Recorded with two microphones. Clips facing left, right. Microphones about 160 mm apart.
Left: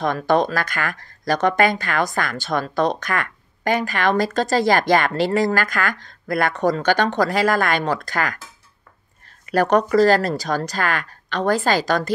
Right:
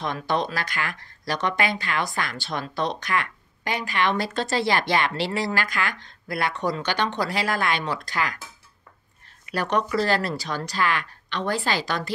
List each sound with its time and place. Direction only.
0.0 s speech: 45° left (ahead or behind)
9.5 s speech: 45° left (ahead or behind)